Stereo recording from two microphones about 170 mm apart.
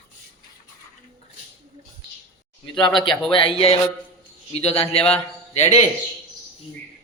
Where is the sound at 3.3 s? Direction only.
30° left (ahead or behind).